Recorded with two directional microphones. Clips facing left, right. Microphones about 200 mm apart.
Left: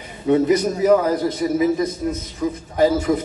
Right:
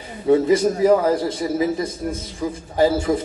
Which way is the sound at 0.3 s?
30° right (ahead or behind).